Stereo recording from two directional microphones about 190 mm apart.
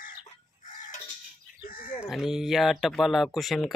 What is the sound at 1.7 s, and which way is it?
Livestock, 50° left (ahead or behind).